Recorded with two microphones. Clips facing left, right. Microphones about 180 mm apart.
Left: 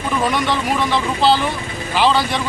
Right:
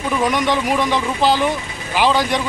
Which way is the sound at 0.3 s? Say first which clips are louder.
Right 1 dB; 15° right (ahead or behind).